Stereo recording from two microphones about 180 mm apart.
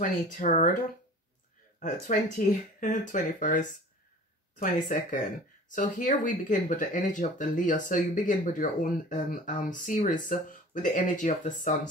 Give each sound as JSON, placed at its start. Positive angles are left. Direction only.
{"t": 0.0, "sound": "speech", "side_deg": 45}
{"t": 1.8, "sound": "speech", "side_deg": 45}